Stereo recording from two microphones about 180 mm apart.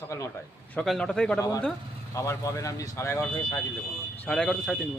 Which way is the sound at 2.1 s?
15° left (ahead or behind).